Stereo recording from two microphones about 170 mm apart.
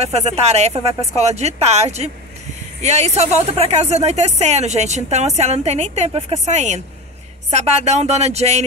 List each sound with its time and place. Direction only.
0.0 s speech: 40° right (ahead or behind)